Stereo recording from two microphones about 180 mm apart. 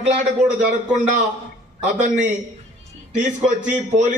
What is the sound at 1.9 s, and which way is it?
Speech, 45° right (ahead or behind).